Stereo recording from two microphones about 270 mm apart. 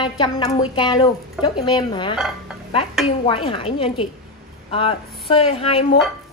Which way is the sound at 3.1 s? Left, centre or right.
Centre.